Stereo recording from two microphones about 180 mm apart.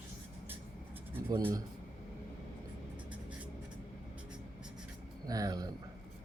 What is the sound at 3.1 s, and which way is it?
Writing, 5° right (ahead or behind).